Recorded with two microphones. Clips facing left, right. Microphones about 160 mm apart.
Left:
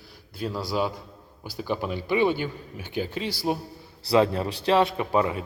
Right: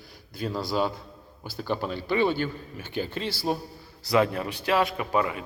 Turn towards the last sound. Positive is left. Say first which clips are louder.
# left 2 dB
turn(degrees=30)  # may be behind; listen again after turning